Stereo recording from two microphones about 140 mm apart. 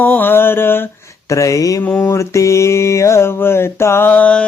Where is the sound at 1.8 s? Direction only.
15° left (ahead or behind).